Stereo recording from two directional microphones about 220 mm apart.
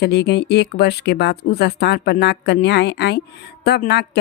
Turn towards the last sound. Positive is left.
turn(degrees=50)  # may be behind; listen again after turning